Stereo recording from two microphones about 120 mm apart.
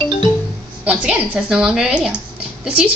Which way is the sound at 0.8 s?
10° right (ahead or behind).